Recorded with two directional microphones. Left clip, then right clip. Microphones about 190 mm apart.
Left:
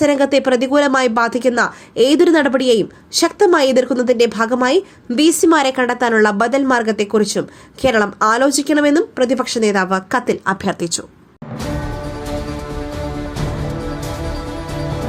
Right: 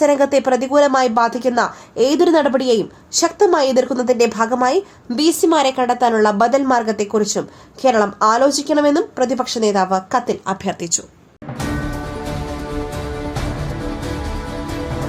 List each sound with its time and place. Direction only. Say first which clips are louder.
0.0 s a woman's voice: even; 20° left (ahead or behind)